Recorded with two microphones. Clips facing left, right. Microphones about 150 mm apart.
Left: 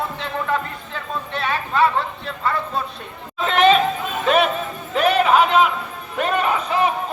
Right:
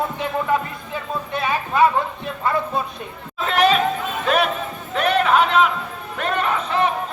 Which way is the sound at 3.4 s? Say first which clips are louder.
Left 2 dB; centre (ahead or behind).